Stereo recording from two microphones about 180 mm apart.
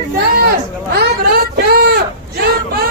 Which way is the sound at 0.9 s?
55° right (ahead or behind).